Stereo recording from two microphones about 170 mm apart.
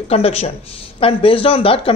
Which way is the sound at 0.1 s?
35° left (ahead or behind).